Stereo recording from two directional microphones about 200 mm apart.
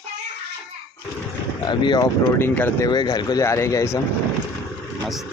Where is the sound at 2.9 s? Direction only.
20° left (ahead or behind).